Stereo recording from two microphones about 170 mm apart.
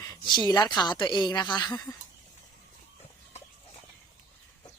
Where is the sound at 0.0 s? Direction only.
25° left (ahead or behind).